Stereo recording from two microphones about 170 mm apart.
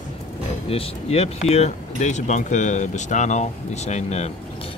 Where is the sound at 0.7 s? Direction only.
35° left (ahead or behind).